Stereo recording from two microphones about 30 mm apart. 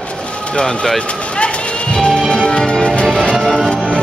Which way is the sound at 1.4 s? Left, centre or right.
Left.